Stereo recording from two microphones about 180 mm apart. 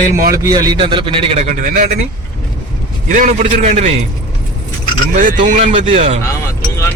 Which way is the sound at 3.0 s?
45° right (ahead or behind).